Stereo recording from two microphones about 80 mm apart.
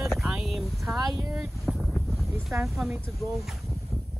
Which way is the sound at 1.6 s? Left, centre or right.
Centre.